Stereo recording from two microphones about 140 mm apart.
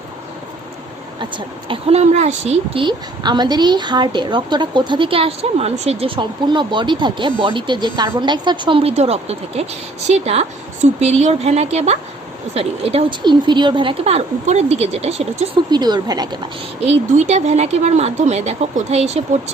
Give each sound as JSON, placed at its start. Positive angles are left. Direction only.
{"t": 1.2, "sound": "speech", "side_deg": -40}
{"t": 2.8, "sound": "a woman's voice", "side_deg": -30}
{"t": 15.7, "sound": "speech", "side_deg": -30}
{"t": 16.8, "sound": "speech", "side_deg": -50}